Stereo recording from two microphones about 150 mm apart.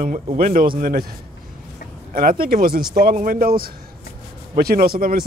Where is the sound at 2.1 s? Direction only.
75° right (ahead or behind).